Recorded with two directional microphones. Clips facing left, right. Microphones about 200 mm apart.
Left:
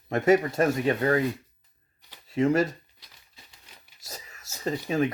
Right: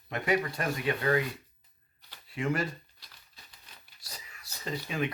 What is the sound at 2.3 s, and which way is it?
Speech, 40° left (ahead or behind).